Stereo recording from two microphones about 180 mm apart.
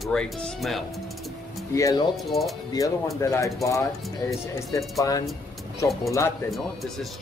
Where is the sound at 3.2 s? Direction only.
15° left (ahead or behind).